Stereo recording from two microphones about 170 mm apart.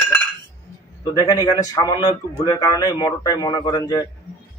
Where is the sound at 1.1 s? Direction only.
20° left (ahead or behind).